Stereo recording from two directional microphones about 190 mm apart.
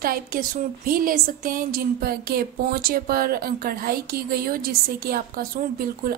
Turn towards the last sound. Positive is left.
turn(degrees=-50)  # may be behind; listen again after turning